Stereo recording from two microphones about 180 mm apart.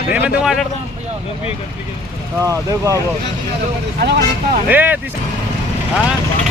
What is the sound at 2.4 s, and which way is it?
Speech, 20° right (ahead or behind).